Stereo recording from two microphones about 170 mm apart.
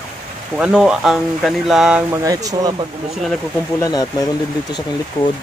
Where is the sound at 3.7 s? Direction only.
20° left (ahead or behind).